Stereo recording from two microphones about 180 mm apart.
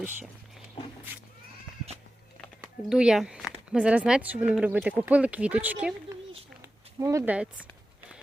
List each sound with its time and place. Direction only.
2.9 s speech: 5° right (ahead or behind)